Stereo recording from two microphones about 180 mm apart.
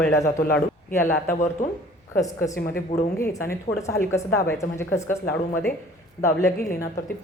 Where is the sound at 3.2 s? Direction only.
15° left (ahead or behind).